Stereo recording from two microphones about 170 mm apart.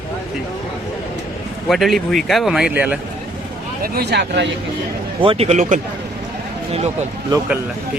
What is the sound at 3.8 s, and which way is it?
Speech, 70° right (ahead or behind).